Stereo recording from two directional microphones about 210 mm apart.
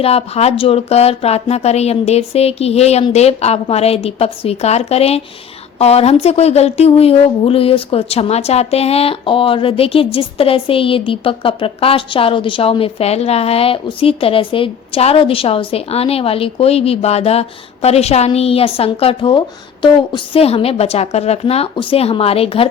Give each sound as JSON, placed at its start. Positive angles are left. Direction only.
{"t": 0.0, "sound": "speech", "side_deg": 30}